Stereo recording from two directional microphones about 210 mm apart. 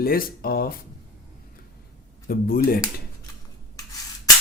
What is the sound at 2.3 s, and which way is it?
Speech, 45° left (ahead or behind).